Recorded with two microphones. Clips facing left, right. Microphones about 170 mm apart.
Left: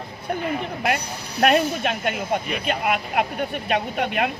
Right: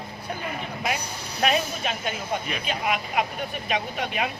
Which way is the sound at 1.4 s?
60° left (ahead or behind).